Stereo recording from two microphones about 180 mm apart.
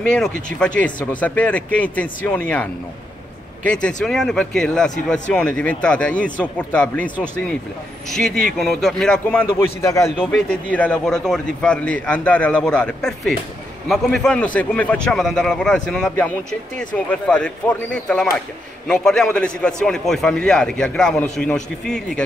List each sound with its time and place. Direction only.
0.0 s a man's voice: 5° left (ahead or behind)
3.6 s a man's voice: 5° left (ahead or behind)
8.5 s a man's voice: 5° left (ahead or behind)